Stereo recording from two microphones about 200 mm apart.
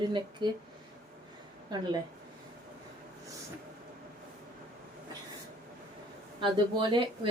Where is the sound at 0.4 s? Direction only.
25° right (ahead or behind).